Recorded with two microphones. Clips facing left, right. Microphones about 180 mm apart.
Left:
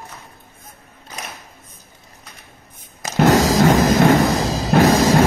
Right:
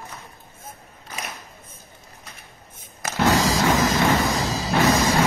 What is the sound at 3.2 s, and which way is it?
Music, 60° left (ahead or behind).